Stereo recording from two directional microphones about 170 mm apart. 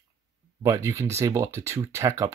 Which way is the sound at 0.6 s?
15° right (ahead or behind).